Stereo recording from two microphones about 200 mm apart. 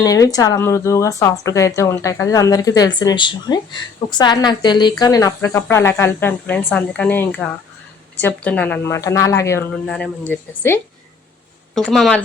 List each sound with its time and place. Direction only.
0.0 s a woman's voice: 15° left (ahead or behind)
11.9 s speech: centre (ahead or behind)